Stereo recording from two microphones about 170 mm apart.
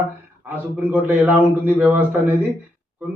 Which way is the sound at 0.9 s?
10° right (ahead or behind).